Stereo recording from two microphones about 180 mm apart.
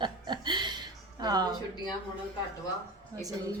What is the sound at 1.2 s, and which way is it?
Speech, 20° right (ahead or behind).